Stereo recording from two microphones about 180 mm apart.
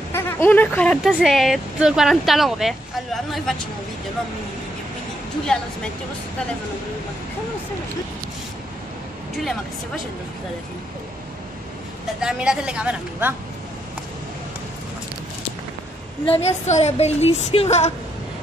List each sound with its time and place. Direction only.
0.1 s speech: 15° left (ahead or behind)
5.5 s speech: 5° left (ahead or behind)
12.2 s speech: 5° right (ahead or behind)
16.3 s a woman's voice: 35° left (ahead or behind)